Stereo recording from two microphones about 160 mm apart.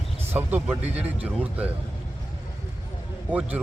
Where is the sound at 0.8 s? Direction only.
45° right (ahead or behind).